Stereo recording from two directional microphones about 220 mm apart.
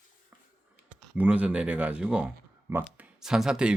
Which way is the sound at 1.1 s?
5° right (ahead or behind).